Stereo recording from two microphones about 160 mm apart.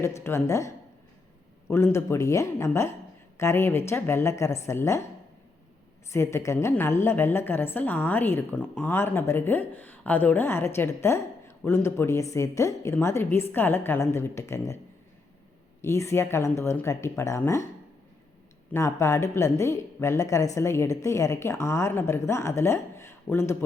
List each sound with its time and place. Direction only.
0.0 s a woman's voice: 15° left (ahead or behind)
6.1 s a woman's voice: 15° left (ahead or behind)
15.8 s a woman's voice: 20° left (ahead or behind)
18.7 s a woman's voice: 15° left (ahead or behind)